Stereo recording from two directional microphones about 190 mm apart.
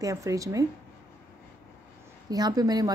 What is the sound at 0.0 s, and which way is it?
Speech, 15° right (ahead or behind).